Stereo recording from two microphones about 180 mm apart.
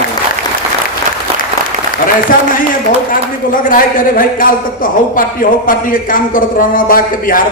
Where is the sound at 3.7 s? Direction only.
50° left (ahead or behind).